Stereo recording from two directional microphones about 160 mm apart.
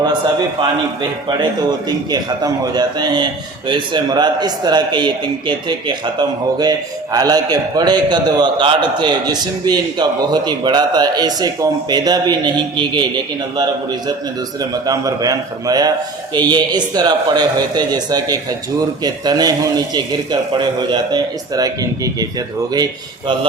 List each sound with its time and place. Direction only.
2.0 s a man's voice: 25° right (ahead or behind)
14.6 s a man's voice: 25° right (ahead or behind)